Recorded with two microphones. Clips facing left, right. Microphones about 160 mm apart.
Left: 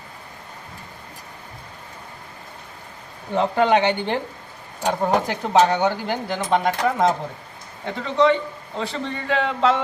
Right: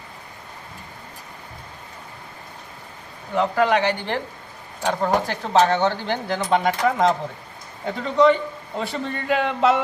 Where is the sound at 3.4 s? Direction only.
25° left (ahead or behind).